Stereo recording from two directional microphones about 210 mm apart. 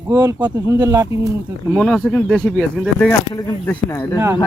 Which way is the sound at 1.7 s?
Centre (ahead or behind).